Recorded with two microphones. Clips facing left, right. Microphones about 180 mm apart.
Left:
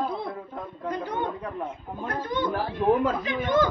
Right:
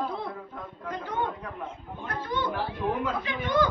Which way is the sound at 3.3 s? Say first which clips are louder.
Left 2 dB; 45° left (ahead or behind).